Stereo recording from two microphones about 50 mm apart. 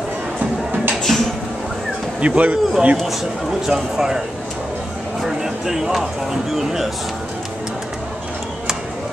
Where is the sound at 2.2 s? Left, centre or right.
Right.